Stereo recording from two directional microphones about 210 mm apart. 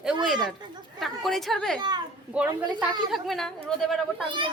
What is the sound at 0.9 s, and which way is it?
Speech, centre (ahead or behind).